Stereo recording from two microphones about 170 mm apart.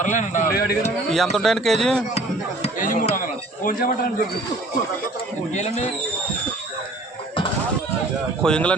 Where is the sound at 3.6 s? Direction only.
55° left (ahead or behind).